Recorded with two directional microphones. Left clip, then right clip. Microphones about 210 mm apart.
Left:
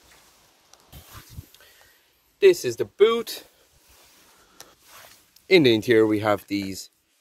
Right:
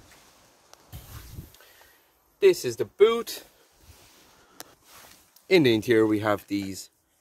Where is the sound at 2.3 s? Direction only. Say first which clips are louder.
Left 3 dB; centre (ahead or behind).